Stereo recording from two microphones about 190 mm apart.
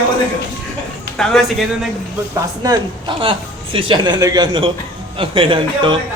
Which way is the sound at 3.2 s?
25° right (ahead or behind).